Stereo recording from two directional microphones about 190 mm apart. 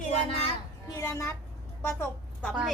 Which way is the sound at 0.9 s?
15° left (ahead or behind).